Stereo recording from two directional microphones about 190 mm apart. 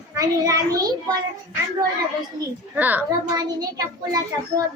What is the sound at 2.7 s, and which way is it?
Speech, 10° right (ahead or behind).